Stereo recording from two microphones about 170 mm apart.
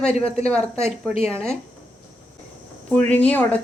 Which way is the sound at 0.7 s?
40° left (ahead or behind).